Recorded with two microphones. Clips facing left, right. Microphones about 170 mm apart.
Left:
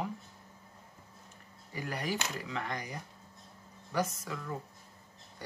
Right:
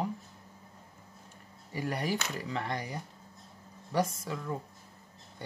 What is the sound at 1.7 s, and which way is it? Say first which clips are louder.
Speech: right 3 dB; 30° right (ahead or behind).